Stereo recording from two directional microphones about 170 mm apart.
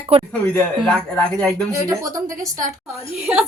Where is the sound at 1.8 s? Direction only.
20° right (ahead or behind).